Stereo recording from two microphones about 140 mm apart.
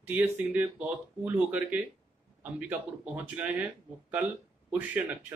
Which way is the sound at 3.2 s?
10° right (ahead or behind).